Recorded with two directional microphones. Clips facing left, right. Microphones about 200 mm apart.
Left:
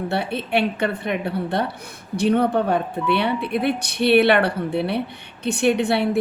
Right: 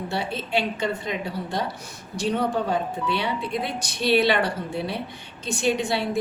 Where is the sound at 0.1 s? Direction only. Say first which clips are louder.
Left 3 dB; 60° left (ahead or behind).